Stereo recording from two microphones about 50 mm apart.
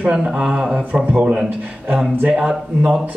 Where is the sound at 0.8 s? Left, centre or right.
Right.